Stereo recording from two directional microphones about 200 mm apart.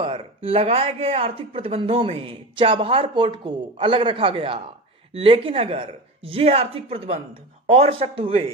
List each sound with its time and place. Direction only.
0.0 s speech: 25° right (ahead or behind)